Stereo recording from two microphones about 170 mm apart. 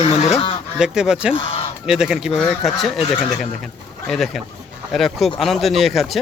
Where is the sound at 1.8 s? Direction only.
5° right (ahead or behind).